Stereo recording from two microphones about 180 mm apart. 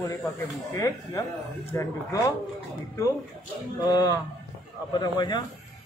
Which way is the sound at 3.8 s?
20° left (ahead or behind).